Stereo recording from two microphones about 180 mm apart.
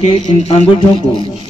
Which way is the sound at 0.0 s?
35° left (ahead or behind).